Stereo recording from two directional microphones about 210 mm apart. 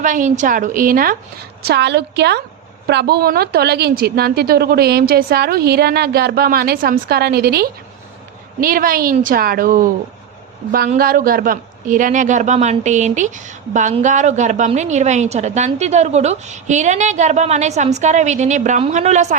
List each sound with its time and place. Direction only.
0.0 s a woman's voice: 35° right (ahead or behind)